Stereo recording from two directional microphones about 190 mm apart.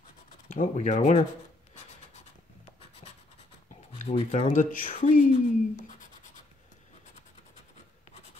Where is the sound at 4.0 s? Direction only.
35° left (ahead or behind).